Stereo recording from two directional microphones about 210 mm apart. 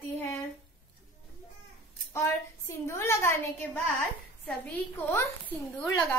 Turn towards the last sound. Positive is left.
turn(degrees=10)  # may be behind; listen again after turning